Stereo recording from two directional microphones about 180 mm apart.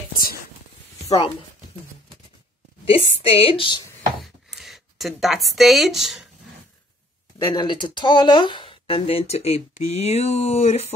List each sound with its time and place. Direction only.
2.8 s speech: 30° left (ahead or behind)
4.2 s a sound: centre (ahead or behind)
7.3 s speech: 25° left (ahead or behind)